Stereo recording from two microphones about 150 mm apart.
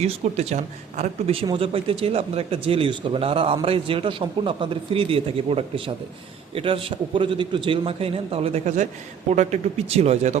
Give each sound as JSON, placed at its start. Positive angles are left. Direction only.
{"t": 0.0, "sound": "speech", "side_deg": -45}
{"t": 1.5, "sound": "speech", "side_deg": -40}